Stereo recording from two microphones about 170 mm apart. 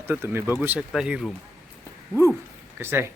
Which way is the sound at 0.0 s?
15° right (ahead or behind).